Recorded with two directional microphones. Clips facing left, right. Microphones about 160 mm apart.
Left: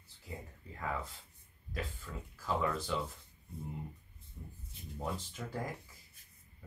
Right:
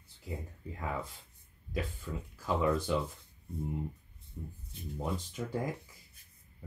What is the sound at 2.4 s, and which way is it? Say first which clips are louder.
Speech: right 4 dB; 15° right (ahead or behind).